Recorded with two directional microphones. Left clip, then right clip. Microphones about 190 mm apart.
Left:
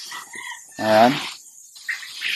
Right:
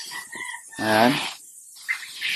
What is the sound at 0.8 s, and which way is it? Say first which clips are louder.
Speech: left 4 dB; 20° left (ahead or behind).